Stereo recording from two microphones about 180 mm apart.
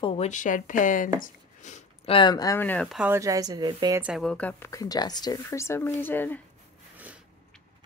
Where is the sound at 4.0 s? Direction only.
Centre (ahead or behind).